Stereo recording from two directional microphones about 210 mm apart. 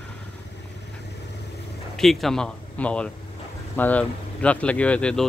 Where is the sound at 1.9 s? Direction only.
Centre (ahead or behind).